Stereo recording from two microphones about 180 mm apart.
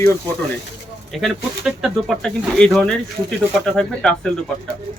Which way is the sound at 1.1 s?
Centre (ahead or behind).